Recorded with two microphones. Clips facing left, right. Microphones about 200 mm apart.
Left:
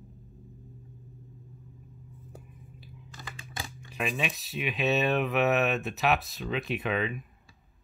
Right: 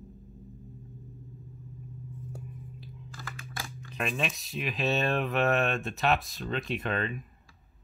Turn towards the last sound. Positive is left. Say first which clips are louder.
# left 2 dB
turn(degrees=0)  # may be behind; listen again after turning